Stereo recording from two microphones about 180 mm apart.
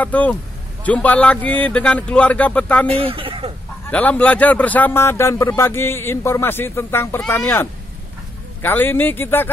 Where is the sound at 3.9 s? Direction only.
10° left (ahead or behind).